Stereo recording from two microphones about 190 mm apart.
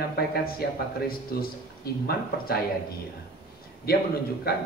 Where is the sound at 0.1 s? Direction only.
55° left (ahead or behind).